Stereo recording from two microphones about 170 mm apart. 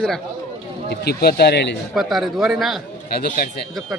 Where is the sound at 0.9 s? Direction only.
70° left (ahead or behind).